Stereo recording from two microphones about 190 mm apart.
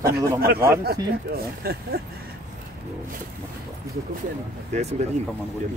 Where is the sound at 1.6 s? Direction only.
55° right (ahead or behind).